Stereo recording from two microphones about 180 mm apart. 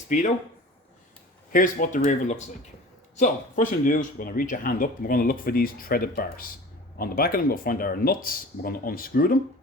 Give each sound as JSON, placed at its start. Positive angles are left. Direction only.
{"t": 0.1, "sound": "speech", "side_deg": 40}
{"t": 1.5, "sound": "speech", "side_deg": 45}